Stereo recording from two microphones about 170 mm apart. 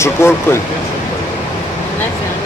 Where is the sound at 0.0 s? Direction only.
15° left (ahead or behind).